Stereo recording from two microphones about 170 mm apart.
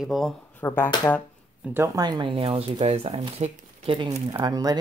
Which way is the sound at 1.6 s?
15° right (ahead or behind).